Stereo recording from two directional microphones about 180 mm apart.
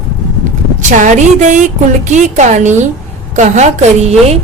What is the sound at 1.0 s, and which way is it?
A woman's voice, 45° right (ahead or behind).